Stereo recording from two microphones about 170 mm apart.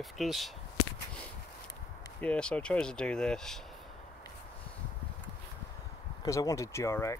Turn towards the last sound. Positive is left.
turn(degrees=15)  # may be behind; listen again after turning